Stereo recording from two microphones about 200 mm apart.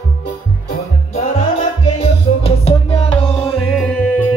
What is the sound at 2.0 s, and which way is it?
Music, 30° left (ahead or behind).